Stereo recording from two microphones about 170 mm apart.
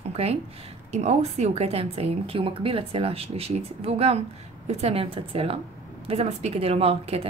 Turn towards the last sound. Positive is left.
turn(degrees=-35)  # may be behind; listen again after turning